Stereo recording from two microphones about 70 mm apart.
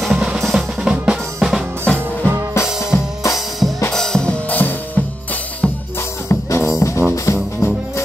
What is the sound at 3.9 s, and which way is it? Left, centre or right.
Music, centre.